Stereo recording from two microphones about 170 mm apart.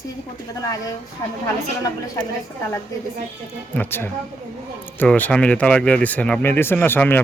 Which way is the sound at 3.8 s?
15° left (ahead or behind).